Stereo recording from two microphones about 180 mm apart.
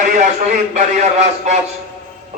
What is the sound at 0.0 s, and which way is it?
A man's voice, 45° right (ahead or behind).